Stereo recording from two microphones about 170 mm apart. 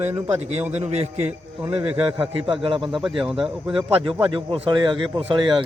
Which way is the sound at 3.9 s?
30° right (ahead or behind).